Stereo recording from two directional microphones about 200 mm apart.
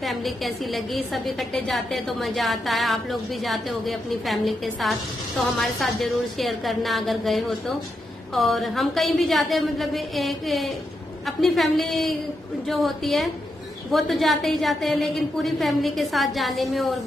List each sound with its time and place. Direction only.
0.0 s a woman's voice: centre (ahead or behind)